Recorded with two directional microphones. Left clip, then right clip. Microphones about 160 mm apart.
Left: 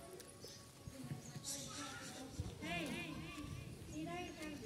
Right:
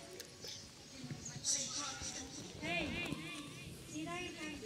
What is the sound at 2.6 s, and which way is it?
Music, 25° left (ahead or behind).